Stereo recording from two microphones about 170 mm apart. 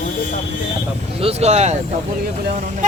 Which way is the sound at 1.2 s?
40° right (ahead or behind).